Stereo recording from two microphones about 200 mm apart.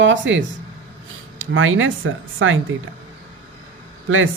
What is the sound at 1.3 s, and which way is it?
Speech, 80° right.